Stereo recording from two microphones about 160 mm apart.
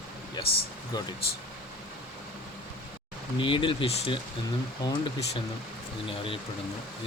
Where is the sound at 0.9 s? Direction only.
25° left (ahead or behind).